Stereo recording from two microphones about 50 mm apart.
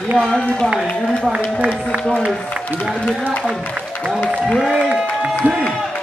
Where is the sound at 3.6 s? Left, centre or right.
Left.